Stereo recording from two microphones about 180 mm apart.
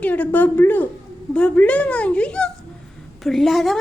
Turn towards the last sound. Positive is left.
turn(degrees=0)  # may be behind; listen again after turning